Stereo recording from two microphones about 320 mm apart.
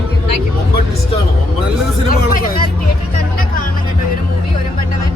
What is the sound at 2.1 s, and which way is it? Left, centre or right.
Hubbub, left.